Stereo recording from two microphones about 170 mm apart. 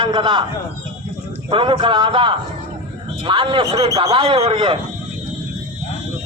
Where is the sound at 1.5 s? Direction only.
30° right (ahead or behind).